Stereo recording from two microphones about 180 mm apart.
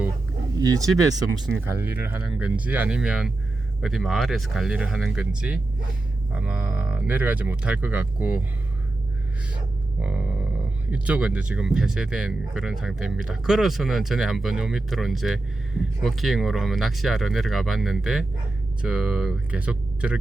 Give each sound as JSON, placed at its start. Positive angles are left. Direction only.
{"t": 0.6, "sound": "speech", "side_deg": -20}
{"t": 10.0, "sound": "speech", "side_deg": -5}